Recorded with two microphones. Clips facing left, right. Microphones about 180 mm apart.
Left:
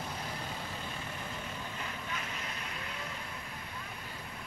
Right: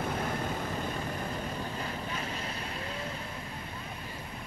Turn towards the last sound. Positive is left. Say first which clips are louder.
# right 5 dB
turn(degrees=-30)  # may be behind; listen again after turning